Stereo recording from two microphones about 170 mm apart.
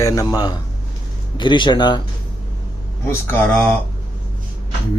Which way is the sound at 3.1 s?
10° left (ahead or behind).